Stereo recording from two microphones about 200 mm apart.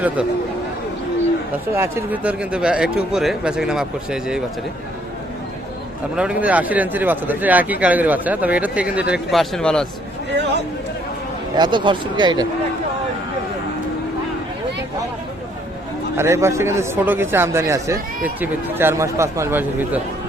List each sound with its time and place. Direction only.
1.7 s speech: 10° right (ahead or behind)
6.1 s speech: 5° right (ahead or behind)
11.5 s speech: 20° right (ahead or behind)
16.1 s speech: 15° right (ahead or behind)